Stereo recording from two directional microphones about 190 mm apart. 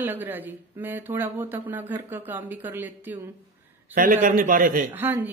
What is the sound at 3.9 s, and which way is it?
Speech, 45° right (ahead or behind).